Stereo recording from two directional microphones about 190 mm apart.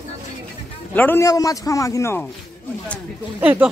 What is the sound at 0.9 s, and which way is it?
Speech, 10° left (ahead or behind).